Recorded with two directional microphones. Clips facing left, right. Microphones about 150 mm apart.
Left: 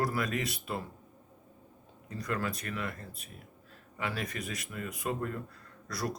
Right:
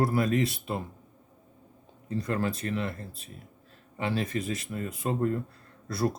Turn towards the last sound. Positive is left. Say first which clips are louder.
# right 7 dB
turn(degrees=-25)  # may be behind; listen again after turning